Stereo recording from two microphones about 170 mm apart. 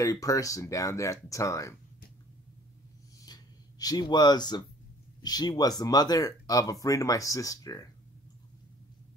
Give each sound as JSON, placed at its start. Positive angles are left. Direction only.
{"t": 0.0, "sound": "speech", "side_deg": 20}
{"t": 3.3, "sound": "a sound", "side_deg": 20}
{"t": 5.2, "sound": "speech", "side_deg": 25}